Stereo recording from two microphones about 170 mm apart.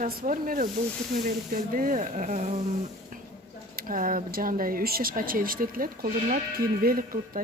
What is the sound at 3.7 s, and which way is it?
A woman's voice, 55° right (ahead or behind).